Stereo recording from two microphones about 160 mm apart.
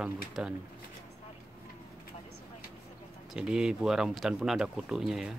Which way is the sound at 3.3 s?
5° right (ahead or behind).